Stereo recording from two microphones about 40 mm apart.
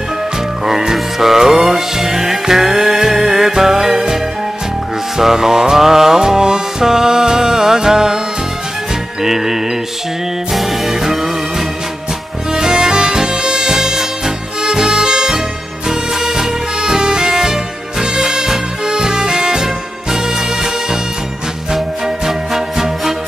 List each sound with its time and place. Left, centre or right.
0.7 s music: centre
9.2 s music: centre
12.5 s music: centre
21.7 s music: centre